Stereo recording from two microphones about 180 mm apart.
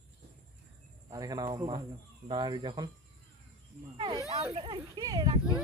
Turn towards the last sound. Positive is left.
turn(degrees=-20)  # may be behind; listen again after turning